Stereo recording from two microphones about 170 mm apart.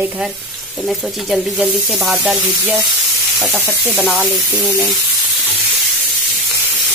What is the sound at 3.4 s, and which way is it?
Sizzle, 10° right (ahead or behind).